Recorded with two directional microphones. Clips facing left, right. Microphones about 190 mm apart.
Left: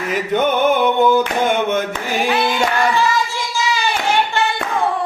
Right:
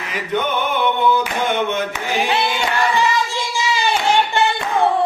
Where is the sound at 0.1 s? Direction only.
45° left (ahead or behind).